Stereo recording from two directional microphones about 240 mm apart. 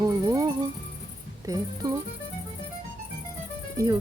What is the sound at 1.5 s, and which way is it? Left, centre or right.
Speech, centre.